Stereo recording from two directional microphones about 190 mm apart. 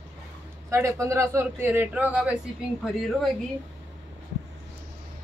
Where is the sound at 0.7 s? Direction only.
15° right (ahead or behind).